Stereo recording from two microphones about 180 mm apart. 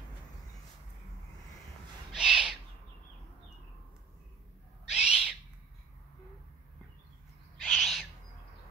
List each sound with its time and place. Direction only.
2.1 s owl: 5° right (ahead or behind)
4.9 s owl: 5° right (ahead or behind)
7.6 s owl: centre (ahead or behind)